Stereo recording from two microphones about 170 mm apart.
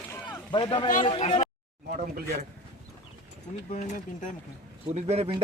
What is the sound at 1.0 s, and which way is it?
Speech, 35° left (ahead or behind).